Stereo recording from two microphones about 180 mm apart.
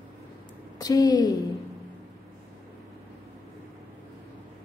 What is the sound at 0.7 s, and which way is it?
Speech, 20° left (ahead or behind).